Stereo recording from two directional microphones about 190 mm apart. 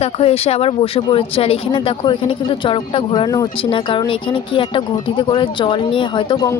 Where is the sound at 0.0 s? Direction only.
30° left (ahead or behind).